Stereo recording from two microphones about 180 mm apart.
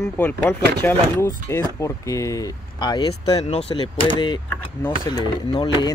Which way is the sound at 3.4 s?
35° left (ahead or behind).